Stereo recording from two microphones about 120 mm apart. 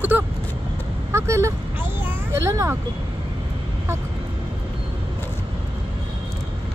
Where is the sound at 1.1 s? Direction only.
25° right (ahead or behind).